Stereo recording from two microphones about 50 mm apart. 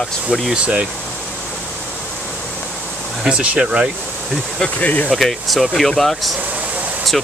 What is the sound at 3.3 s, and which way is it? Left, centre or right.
Speech, right.